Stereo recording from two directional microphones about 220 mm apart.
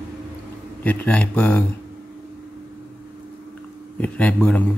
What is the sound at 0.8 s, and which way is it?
Speech, 5° left (ahead or behind).